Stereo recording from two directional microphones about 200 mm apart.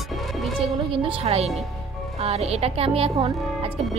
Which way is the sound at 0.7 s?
25° right (ahead or behind).